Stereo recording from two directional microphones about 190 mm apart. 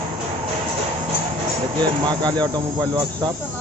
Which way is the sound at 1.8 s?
25° right (ahead or behind).